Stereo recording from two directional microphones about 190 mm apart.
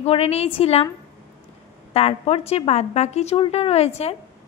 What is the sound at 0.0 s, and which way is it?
Speech, 30° left (ahead or behind).